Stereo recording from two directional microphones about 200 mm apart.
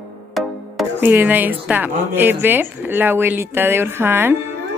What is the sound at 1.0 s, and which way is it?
Speech, 10° right (ahead or behind).